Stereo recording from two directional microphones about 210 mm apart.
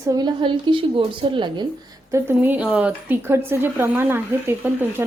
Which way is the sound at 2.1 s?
10° right (ahead or behind).